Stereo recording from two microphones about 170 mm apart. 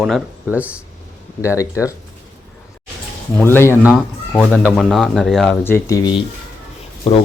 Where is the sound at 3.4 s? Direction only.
15° left (ahead or behind).